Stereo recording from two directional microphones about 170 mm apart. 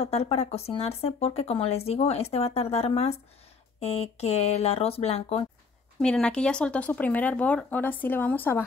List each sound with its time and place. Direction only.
0.0 s speech: 35° left (ahead or behind)
5.9 s speech: 5° left (ahead or behind)